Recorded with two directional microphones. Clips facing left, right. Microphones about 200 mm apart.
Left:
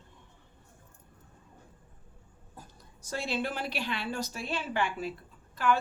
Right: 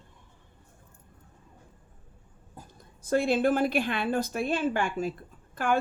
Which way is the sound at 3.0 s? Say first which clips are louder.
Right 9 dB; 55° right (ahead or behind).